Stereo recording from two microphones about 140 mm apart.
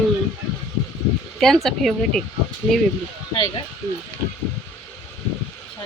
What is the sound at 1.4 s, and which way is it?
Speech, 5° left (ahead or behind).